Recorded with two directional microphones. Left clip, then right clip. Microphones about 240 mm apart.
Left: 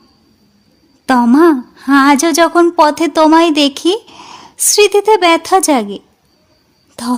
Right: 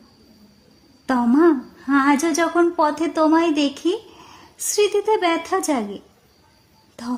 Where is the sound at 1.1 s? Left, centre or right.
Left.